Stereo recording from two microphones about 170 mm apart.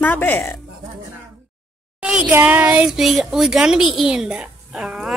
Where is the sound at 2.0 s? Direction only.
10° right (ahead or behind).